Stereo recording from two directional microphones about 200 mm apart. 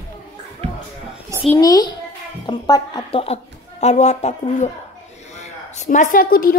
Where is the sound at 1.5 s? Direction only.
20° left (ahead or behind).